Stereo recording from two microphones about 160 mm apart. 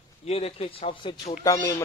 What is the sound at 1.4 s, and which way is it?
Speech, 20° left (ahead or behind).